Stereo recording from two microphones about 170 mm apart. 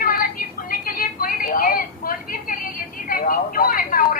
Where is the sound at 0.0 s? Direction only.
60° left (ahead or behind).